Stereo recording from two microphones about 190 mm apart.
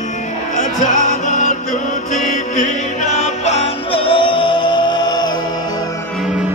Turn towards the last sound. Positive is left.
turn(degrees=20)  # may be behind; listen again after turning